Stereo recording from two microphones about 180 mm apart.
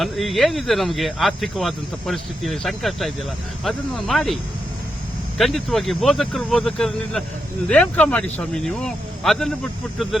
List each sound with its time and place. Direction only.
0.0 s speech: centre (ahead or behind)
5.4 s speech: centre (ahead or behind)